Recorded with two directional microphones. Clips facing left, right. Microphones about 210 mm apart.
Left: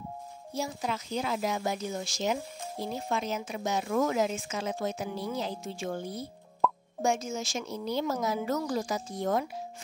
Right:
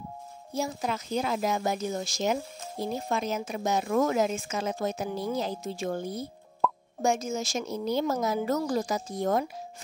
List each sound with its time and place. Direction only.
0.6 s speech: 45° right (ahead or behind)
6.6 s plop: centre (ahead or behind)
7.0 s speech: 40° right (ahead or behind)